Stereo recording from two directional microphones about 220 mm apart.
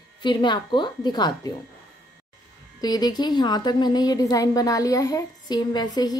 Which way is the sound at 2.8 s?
20° left (ahead or behind).